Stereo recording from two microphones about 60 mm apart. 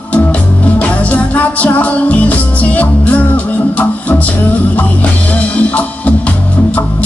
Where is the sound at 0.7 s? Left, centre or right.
Left.